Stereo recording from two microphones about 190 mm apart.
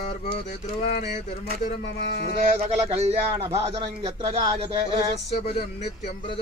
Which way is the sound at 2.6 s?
35° right (ahead or behind).